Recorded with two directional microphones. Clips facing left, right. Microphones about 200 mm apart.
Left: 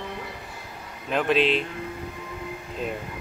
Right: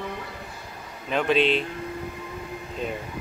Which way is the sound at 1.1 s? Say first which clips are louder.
Even; centre (ahead or behind).